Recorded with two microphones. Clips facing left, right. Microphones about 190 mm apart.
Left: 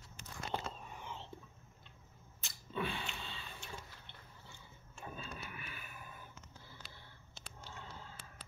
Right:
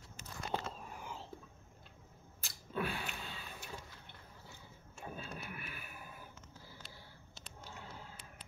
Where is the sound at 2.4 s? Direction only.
5° right (ahead or behind).